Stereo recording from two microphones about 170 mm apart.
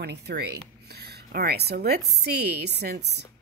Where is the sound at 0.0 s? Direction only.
75° right (ahead or behind).